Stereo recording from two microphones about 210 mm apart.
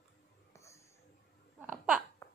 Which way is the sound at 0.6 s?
15° left (ahead or behind).